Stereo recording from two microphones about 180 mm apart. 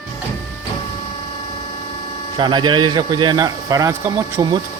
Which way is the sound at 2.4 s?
25° right (ahead or behind).